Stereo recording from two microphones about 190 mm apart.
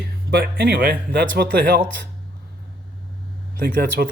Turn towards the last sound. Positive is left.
turn(degrees=-55)  # may be behind; listen again after turning